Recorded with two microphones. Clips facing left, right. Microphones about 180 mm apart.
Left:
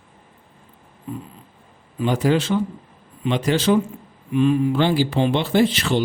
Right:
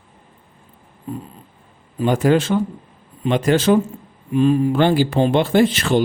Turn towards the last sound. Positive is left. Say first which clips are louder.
# right 3 dB
turn(degrees=-50)  # may be behind; listen again after turning